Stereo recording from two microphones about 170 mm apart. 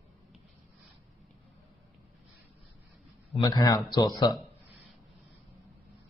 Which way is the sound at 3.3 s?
25° left (ahead or behind).